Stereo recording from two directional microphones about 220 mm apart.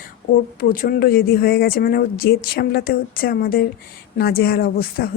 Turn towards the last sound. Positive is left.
turn(degrees=45)  # may be behind; listen again after turning